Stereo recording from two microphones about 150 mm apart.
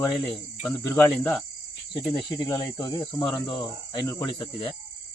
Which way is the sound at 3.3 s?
30° left (ahead or behind).